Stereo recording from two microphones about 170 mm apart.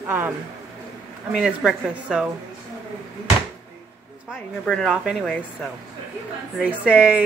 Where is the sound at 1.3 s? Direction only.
5° right (ahead or behind).